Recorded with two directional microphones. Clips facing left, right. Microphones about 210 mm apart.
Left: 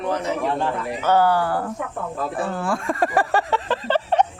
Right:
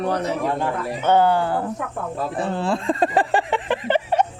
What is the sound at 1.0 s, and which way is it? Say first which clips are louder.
Speech: right 1 dB; 25° right (ahead or behind).